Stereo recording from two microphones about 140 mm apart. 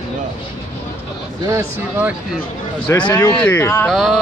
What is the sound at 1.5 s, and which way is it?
Speech, 10° right (ahead or behind).